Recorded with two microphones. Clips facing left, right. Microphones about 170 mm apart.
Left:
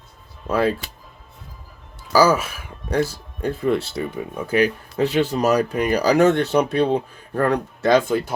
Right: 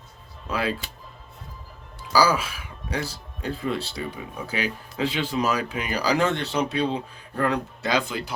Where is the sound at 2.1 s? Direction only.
50° left (ahead or behind).